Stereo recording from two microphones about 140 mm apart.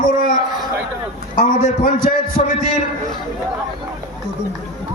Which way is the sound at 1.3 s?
75° left (ahead or behind).